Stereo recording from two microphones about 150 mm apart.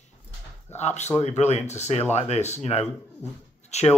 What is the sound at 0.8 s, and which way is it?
Speech, 50° left (ahead or behind).